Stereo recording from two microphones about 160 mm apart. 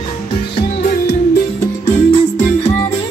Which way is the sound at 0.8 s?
75° left (ahead or behind).